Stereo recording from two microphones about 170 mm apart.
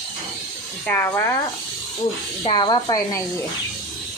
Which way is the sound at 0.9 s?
15° left (ahead or behind).